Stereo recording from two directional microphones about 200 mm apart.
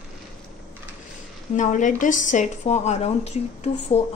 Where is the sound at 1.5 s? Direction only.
40° left (ahead or behind).